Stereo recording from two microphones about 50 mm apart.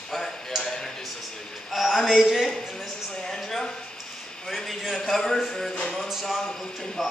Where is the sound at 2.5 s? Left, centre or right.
Centre.